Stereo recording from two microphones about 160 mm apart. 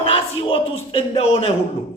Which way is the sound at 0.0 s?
35° left (ahead or behind).